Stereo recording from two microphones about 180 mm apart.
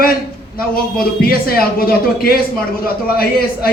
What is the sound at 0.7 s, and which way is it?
A man's voice, 55° left (ahead or behind).